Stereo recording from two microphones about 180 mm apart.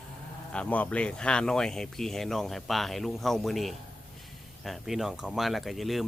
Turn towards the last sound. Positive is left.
turn(degrees=0)  # may be behind; listen again after turning